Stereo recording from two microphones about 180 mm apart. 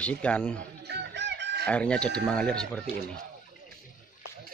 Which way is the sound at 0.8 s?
70° right (ahead or behind).